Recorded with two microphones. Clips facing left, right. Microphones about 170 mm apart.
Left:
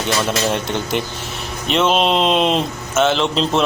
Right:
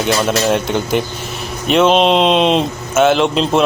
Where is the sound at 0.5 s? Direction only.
Centre (ahead or behind).